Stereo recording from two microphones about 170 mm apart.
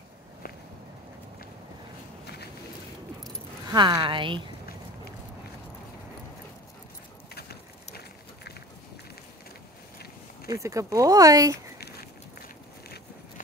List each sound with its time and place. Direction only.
3.7 s speech: 25° right (ahead or behind)
7.3 s a sound: 65° left (ahead or behind)
10.5 s speech: 20° right (ahead or behind)